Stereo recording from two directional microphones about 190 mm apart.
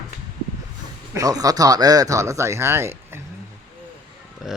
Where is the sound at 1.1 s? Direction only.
20° right (ahead or behind).